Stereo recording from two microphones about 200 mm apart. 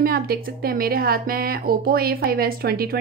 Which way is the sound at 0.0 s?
50° right (ahead or behind).